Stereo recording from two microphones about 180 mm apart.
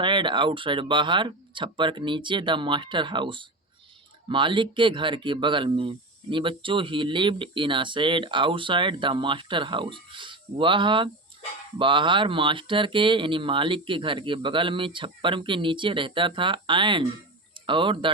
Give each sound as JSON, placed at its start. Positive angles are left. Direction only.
{"t": 0.0, "sound": "speech", "side_deg": -25}